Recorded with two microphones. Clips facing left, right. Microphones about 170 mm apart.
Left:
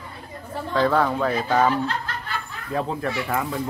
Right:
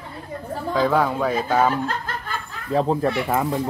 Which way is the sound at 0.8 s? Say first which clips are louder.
Even; 10° right (ahead or behind).